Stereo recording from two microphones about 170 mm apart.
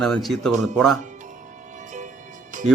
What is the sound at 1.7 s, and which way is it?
Music, 45° right (ahead or behind).